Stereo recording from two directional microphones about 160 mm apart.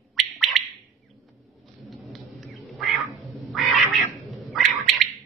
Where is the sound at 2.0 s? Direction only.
Centre (ahead or behind).